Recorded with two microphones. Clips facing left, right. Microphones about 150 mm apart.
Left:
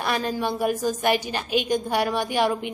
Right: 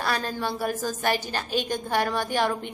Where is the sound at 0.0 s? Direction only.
15° left (ahead or behind).